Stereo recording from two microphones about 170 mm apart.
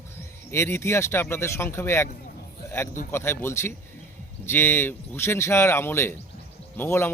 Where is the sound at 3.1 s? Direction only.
15° left (ahead or behind).